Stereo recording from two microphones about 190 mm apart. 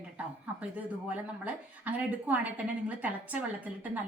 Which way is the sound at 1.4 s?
10° right (ahead or behind).